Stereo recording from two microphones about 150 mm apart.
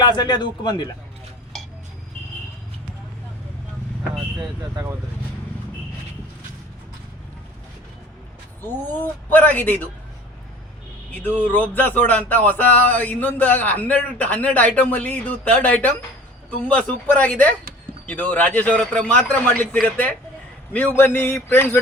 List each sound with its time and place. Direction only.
0.0 s speech: 30° left (ahead or behind)
4.4 s speech: 20° right (ahead or behind)
8.6 s speech: 10° left (ahead or behind)
11.1 s speech: 10° left (ahead or behind)